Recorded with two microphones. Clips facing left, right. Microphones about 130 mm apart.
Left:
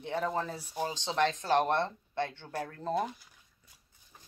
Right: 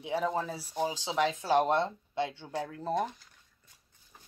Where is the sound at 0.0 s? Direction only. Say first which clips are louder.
Right 1 dB; 5° right (ahead or behind).